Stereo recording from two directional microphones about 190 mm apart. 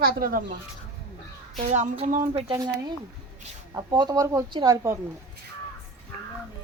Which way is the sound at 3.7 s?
20° right (ahead or behind).